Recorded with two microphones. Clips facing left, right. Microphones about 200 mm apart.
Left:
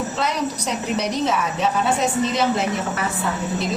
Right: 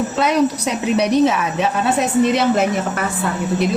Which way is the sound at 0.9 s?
65° right (ahead or behind).